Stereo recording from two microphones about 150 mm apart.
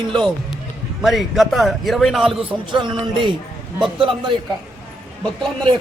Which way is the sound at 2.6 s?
30° right (ahead or behind).